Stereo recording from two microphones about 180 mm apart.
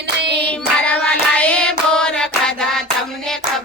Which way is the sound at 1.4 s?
5° left (ahead or behind).